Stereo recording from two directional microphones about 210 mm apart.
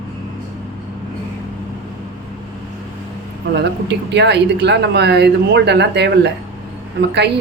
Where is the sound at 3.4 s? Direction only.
55° right (ahead or behind).